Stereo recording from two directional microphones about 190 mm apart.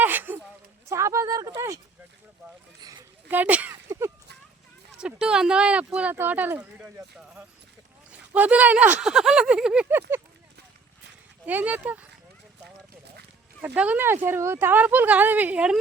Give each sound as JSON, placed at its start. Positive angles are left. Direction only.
{"t": 0.0, "sound": "a sound", "side_deg": -10}
{"t": 0.9, "sound": "speech", "side_deg": -15}
{"t": 3.2, "sound": "a sound", "side_deg": -10}
{"t": 4.9, "sound": "speech", "side_deg": -5}
{"t": 8.3, "sound": "speech", "side_deg": -10}
{"t": 11.4, "sound": "speech", "side_deg": -10}
{"t": 13.6, "sound": "speech", "side_deg": -10}